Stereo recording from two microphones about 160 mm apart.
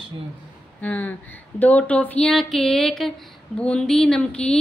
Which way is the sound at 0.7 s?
10° left (ahead or behind).